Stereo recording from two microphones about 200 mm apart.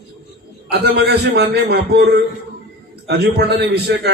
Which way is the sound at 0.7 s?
55° right (ahead or behind).